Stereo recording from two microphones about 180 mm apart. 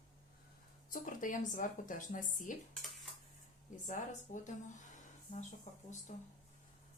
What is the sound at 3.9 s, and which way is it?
Speech, 45° left (ahead or behind).